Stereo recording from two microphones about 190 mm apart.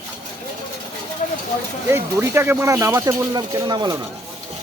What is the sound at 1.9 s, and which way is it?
Speech, 15° right (ahead or behind).